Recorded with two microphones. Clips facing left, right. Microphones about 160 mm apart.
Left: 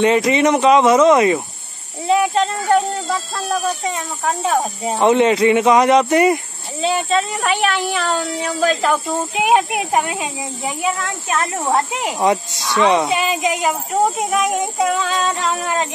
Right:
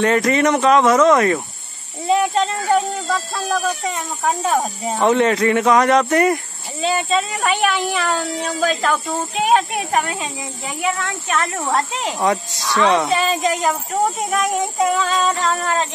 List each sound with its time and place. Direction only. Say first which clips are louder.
0.0 s speech: left 2 dB; 5° left (ahead or behind)
2.0 s speech: left 1 dB; centre (ahead or behind)
4.2 s speech: even; centre (ahead or behind); by 6.1 s 15° left (ahead or behind)
6.3 s speech: left 2 dB; centre (ahead or behind)
9.3 s speech: left 1 dB; 20° left (ahead or behind)
12.6 s speech: left 1 dB; 5° left (ahead or behind)
15.5 s speech: even; 10° left (ahead or behind)